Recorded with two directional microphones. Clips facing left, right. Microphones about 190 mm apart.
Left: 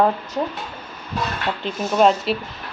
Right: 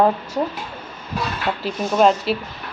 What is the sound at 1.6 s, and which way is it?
Speech, centre (ahead or behind).